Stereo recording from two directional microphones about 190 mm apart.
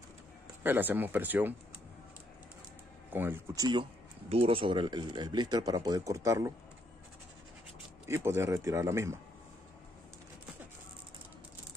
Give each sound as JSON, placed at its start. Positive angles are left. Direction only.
{"t": 0.7, "sound": "speech", "side_deg": -10}
{"t": 3.1, "sound": "speech", "side_deg": -10}
{"t": 8.1, "sound": "speech", "side_deg": -15}